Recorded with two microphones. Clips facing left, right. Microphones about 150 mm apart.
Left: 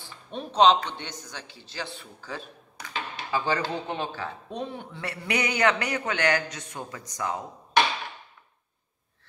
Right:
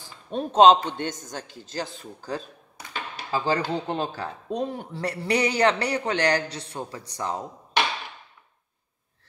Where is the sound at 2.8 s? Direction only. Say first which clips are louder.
Left 1 dB; 30° right (ahead or behind).